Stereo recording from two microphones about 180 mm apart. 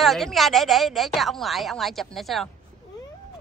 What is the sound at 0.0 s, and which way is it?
A woman's voice, centre (ahead or behind).